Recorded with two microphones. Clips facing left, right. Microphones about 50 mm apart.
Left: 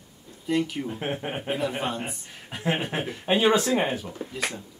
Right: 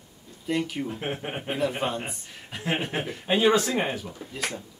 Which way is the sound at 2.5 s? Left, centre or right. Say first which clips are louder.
Left 1 dB; centre.